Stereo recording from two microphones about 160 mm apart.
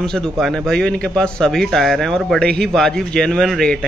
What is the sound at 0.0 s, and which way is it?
A man's voice, 5° left (ahead or behind).